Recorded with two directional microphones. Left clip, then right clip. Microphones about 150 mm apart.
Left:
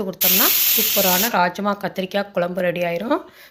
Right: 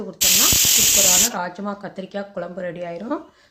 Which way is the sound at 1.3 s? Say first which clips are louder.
Left 8 dB; 25° left (ahead or behind).